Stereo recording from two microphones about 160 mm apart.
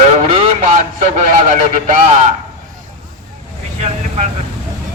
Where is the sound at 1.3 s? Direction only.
55° right (ahead or behind).